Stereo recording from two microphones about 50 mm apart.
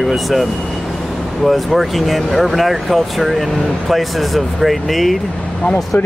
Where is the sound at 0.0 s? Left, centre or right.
Centre.